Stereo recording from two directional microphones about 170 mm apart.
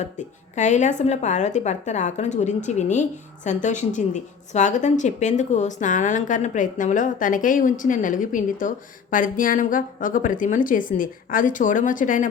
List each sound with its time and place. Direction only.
0.2 s a woman's voice: 45° left (ahead or behind)